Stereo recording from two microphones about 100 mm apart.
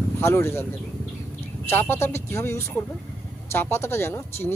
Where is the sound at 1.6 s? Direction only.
25° left (ahead or behind).